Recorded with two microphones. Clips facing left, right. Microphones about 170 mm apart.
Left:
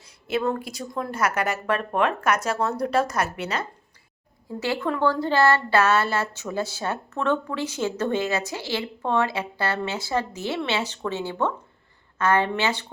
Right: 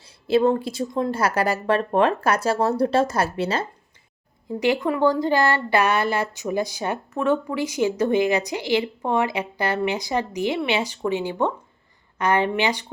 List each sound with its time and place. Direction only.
0.3 s speech: 30° right (ahead or behind)
4.6 s speech: 15° right (ahead or behind)